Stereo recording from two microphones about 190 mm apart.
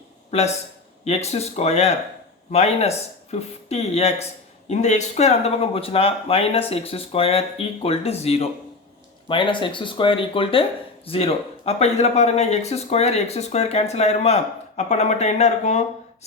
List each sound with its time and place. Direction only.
0.3 s speech: 35° left (ahead or behind)